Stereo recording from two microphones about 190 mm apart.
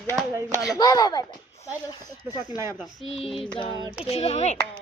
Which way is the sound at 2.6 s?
15° right (ahead or behind).